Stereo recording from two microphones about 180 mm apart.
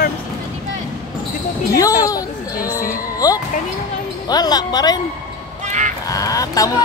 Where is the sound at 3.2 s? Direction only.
20° left (ahead or behind).